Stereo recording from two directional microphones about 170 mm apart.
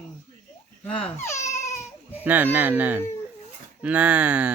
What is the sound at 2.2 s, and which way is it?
Speech, 10° right (ahead or behind).